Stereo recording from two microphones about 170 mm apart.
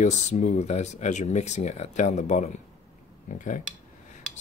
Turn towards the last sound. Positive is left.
turn(degrees=50)  # may be behind; listen again after turning